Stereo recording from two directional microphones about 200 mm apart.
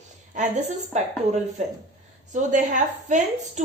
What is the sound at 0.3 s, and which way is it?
A woman's voice, 35° right (ahead or behind).